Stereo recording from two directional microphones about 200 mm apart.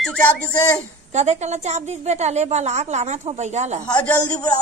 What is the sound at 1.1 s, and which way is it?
A woman's voice, 35° right (ahead or behind).